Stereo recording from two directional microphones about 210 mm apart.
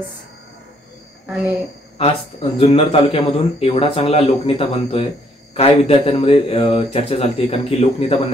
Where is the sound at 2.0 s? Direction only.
30° left (ahead or behind).